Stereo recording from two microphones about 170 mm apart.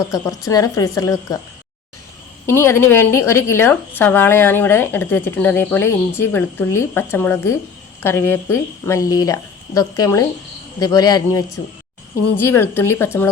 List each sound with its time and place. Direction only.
0.1 s a woman's voice: 20° left (ahead or behind)
2.5 s a woman's voice: 15° left (ahead or behind)